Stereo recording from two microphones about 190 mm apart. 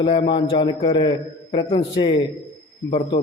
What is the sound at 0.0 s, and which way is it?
A man's voice, 25° left (ahead or behind).